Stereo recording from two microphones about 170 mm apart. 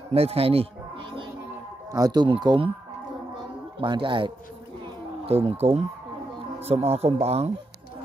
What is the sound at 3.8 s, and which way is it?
Speech, 30° right (ahead or behind).